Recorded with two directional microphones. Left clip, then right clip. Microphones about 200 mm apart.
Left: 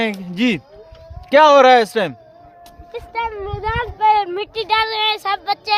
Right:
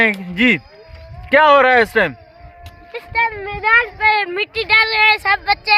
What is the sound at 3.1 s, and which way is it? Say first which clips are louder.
Speech: right 5 dB; 20° left (ahead or behind).